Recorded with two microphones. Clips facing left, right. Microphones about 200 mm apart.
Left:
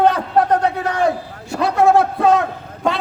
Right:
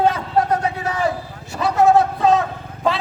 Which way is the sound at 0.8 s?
65° left (ahead or behind).